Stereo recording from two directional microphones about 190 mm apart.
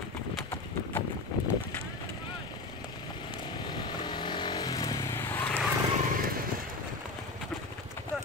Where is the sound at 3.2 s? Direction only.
25° left (ahead or behind); by 5.7 s 10° left (ahead or behind).